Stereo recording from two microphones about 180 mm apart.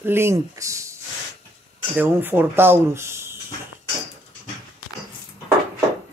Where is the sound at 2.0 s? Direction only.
10° right (ahead or behind).